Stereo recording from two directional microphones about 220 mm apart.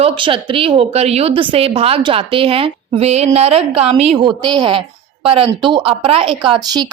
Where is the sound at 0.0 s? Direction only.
25° right (ahead or behind).